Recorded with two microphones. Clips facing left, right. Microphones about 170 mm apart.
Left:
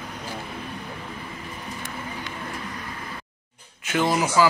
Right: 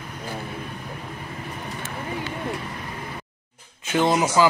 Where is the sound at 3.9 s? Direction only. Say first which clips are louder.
Right 2 dB; 20° right (ahead or behind).